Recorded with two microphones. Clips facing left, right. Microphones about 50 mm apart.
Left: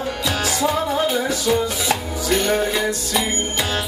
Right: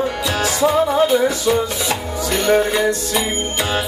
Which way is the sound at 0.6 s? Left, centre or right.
Centre.